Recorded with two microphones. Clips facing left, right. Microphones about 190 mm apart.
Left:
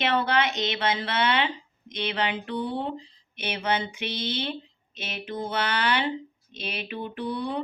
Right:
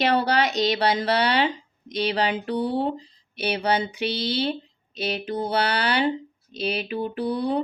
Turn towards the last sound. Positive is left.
turn(degrees=-35)  # may be behind; listen again after turning